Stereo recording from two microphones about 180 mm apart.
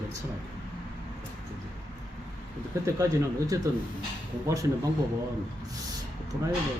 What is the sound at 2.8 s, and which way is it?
Speech, 15° right (ahead or behind).